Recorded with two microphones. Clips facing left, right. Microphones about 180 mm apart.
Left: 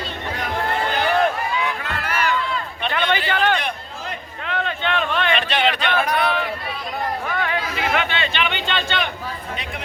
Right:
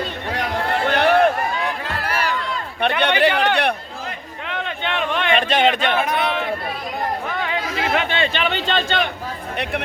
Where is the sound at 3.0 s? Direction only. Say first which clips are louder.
Right 2 dB; 70° right (ahead or behind).